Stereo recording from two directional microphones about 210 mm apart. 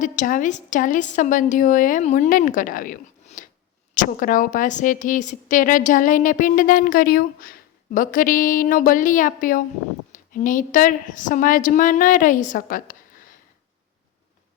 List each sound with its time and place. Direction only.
0.0 s a woman's voice: 40° left (ahead or behind)